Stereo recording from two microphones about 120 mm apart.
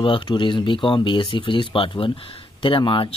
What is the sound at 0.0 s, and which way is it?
Speech, 45° left (ahead or behind).